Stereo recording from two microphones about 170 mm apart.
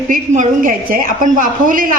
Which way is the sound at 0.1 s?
50° right (ahead or behind).